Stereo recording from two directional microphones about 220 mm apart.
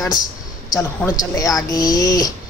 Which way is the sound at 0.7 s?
10° left (ahead or behind).